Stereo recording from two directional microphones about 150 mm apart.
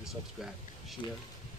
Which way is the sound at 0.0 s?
Centre (ahead or behind).